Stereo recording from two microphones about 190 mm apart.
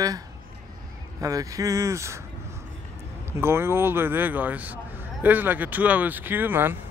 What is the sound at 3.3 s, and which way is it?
Speech, 15° right (ahead or behind).